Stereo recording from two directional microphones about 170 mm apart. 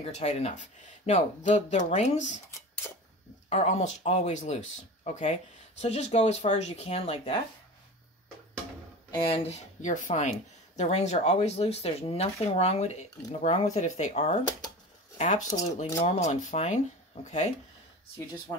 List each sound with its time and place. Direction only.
0.0 s speech: 40° left (ahead or behind)
3.4 s speech: 40° left (ahead or behind)
9.1 s speech: 30° left (ahead or behind)